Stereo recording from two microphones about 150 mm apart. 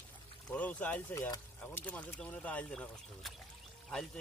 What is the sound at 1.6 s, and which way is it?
Speech, 10° left (ahead or behind).